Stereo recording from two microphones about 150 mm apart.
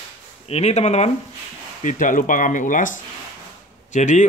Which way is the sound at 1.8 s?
60° left (ahead or behind).